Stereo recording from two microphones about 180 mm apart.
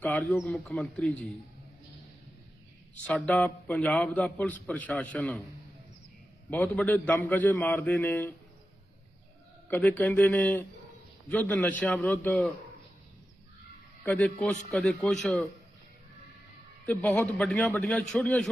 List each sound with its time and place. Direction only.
0.0 s a man's voice: 10° left (ahead or behind)
3.1 s a man's voice: 10° left (ahead or behind)
6.5 s a man's voice: 10° left (ahead or behind)
9.6 s a man's voice: 10° left (ahead or behind)
14.0 s a man's voice: 10° left (ahead or behind)
16.8 s a man's voice: 10° left (ahead or behind)